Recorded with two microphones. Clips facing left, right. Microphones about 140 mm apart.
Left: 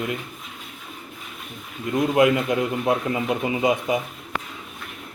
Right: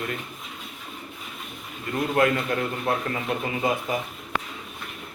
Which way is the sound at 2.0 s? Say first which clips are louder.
Left 4 dB; 15° left (ahead or behind).